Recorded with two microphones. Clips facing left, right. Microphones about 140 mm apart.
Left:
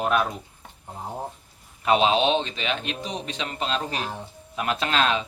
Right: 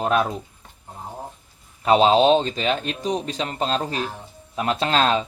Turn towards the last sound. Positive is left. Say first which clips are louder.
# right 4 dB
turn(degrees=-35)  # may be behind; listen again after turning